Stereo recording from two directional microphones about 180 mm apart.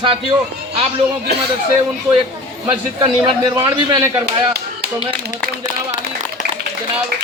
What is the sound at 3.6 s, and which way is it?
Speech, 25° right (ahead or behind).